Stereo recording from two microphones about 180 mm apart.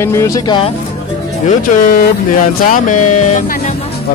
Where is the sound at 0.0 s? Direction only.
15° left (ahead or behind).